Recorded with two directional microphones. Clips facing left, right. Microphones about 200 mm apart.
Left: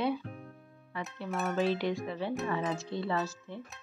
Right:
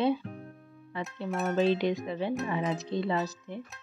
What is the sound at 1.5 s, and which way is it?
Speech, 20° right (ahead or behind).